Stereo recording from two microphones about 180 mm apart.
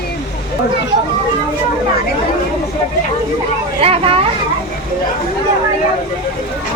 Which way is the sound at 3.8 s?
30° right (ahead or behind).